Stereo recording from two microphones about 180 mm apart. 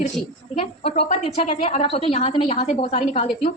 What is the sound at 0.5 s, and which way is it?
A woman's voice, 35° left (ahead or behind).